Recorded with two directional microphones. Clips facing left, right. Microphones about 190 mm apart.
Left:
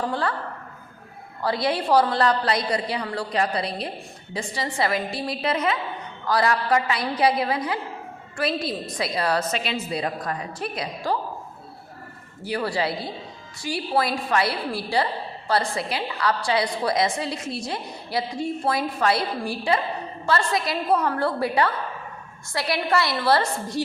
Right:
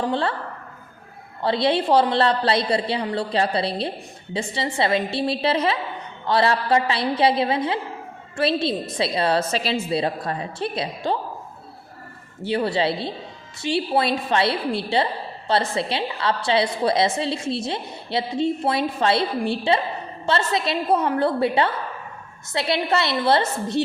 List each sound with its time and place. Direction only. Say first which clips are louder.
0.0 s a woman's voice: right 3 dB; 25° right (ahead or behind)
1.4 s a woman's voice: right 4 dB; 25° right (ahead or behind)
12.4 s a woman's voice: right 4 dB; 25° right (ahead or behind)